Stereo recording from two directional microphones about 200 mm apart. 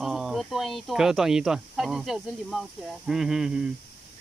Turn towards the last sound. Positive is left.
turn(degrees=-5)  # may be behind; listen again after turning